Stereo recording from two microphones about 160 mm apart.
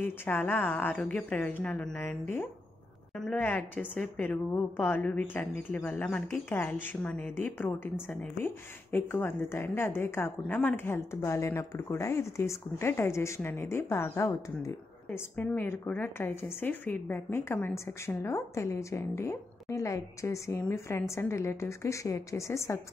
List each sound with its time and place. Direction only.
0.0 s a woman's voice: 15° left (ahead or behind)